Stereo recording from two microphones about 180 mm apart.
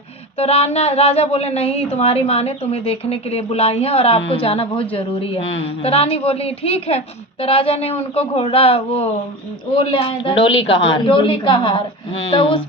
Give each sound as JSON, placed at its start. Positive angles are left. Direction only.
{"t": 0.3, "sound": "a woman's voice", "side_deg": 35}
{"t": 10.5, "sound": "a woman's voice", "side_deg": 85}
{"t": 10.8, "sound": "a woman's voice", "side_deg": 30}